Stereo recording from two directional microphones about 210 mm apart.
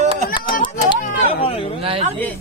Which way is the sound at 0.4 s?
40° left (ahead or behind).